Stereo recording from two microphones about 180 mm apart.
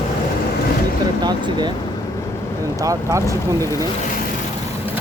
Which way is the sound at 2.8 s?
15° right (ahead or behind).